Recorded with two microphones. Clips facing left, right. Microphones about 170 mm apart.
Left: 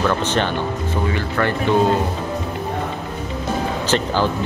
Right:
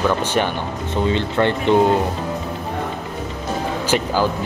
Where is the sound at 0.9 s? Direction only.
20° right (ahead or behind).